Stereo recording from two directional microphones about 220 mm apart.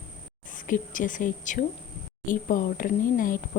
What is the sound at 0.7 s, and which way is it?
Speech, 35° left (ahead or behind).